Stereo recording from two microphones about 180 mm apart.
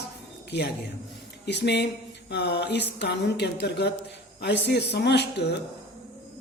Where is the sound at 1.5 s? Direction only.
70° left (ahead or behind).